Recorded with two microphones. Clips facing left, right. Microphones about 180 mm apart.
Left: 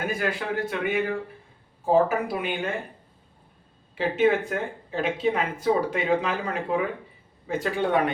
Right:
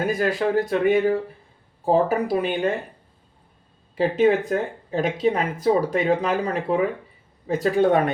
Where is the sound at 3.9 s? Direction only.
40° right (ahead or behind).